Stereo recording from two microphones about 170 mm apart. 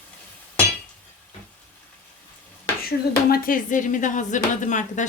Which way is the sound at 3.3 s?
55° left (ahead or behind).